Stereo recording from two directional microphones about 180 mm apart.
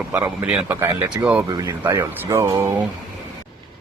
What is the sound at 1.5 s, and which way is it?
Speech, 20° right (ahead or behind).